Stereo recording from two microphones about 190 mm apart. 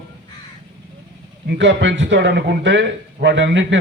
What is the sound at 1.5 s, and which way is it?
Speech, 70° right (ahead or behind).